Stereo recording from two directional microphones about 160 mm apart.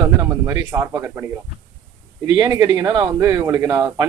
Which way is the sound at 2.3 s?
25° right (ahead or behind).